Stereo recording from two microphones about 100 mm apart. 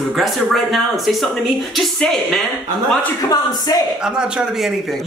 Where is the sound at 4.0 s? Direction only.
10° right (ahead or behind).